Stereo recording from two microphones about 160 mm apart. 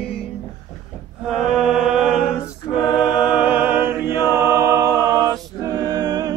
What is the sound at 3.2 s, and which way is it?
Music, 10° right (ahead or behind).